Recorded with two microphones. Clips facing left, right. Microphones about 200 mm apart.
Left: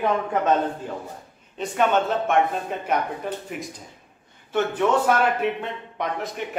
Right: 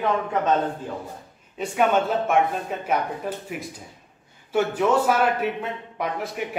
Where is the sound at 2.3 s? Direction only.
Centre (ahead or behind).